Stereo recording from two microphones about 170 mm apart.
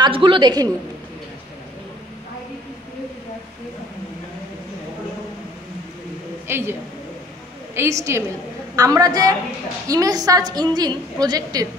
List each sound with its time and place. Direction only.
0.0 s a woman's voice: 30° right (ahead or behind)
6.4 s a man's voice: 15° right (ahead or behind)